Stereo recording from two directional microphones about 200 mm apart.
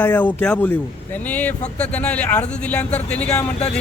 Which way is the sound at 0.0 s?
10° left (ahead or behind).